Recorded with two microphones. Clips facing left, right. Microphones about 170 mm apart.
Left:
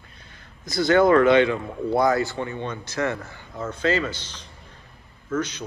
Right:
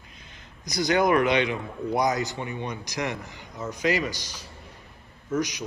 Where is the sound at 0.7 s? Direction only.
20° right (ahead or behind).